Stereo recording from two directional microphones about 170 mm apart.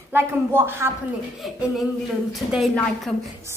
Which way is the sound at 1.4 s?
Centre (ahead or behind).